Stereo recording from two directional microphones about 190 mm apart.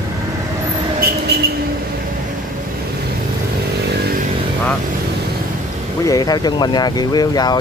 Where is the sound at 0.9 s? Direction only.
55° right (ahead or behind).